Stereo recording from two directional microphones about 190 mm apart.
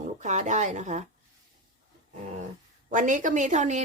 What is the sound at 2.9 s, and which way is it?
Speech, 45° right (ahead or behind).